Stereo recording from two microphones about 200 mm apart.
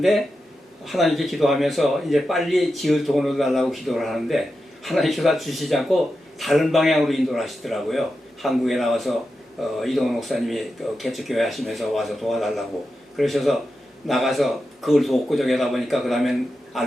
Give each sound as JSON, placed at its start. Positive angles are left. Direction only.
{"t": 0.9, "sound": "speech", "side_deg": 0}